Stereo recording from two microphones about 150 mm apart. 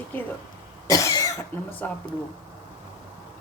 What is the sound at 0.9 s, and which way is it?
Cough, 25° left (ahead or behind).